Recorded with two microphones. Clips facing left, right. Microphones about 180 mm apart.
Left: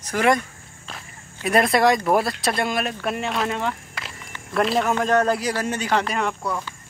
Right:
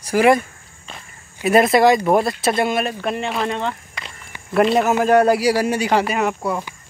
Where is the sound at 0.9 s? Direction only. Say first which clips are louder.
Even; centre (ahead or behind).